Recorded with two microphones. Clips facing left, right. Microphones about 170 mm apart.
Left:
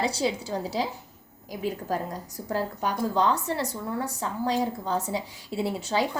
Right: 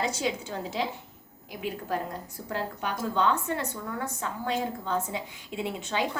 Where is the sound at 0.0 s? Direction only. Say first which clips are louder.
Left 3 dB; 35° left (ahead or behind).